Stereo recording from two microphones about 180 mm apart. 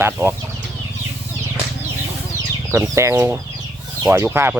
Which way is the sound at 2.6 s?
15° right (ahead or behind).